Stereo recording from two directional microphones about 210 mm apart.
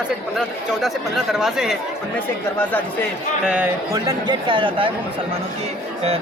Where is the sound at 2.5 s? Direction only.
10° left (ahead or behind).